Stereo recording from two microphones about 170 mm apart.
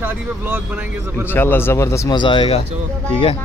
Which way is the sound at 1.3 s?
10° left (ahead or behind).